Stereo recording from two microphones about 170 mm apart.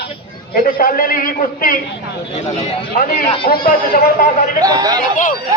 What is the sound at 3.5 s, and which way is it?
Speech, 60° left (ahead or behind).